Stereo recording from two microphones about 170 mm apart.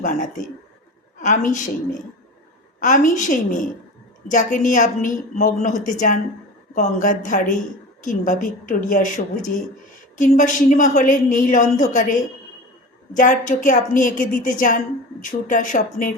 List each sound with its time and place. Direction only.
0.0 s a woman's voice: 50° left (ahead or behind)
2.8 s a woman's voice: 50° left (ahead or behind)